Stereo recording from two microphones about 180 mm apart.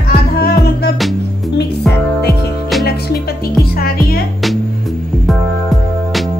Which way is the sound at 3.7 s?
55° left (ahead or behind).